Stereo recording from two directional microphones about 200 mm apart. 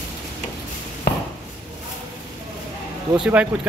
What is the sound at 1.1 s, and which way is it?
Chop, 50° left (ahead or behind).